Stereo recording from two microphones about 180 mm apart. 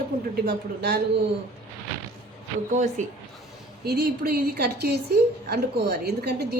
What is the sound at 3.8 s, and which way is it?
A woman's voice, 60° right (ahead or behind).